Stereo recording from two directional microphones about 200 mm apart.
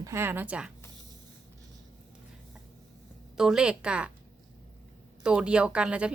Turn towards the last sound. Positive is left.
turn(degrees=-5)  # may be behind; listen again after turning